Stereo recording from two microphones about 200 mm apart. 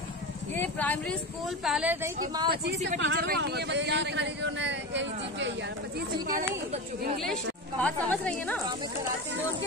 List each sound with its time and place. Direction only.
0.6 s speech: 5° left (ahead or behind)
1.6 s a woman's voice: 5° right (ahead or behind)
2.5 s speech: 55° right (ahead or behind)
3.0 s speech: 65° right (ahead or behind)
3.3 s speech: 55° right (ahead or behind)
7.8 s speech: 5° left (ahead or behind)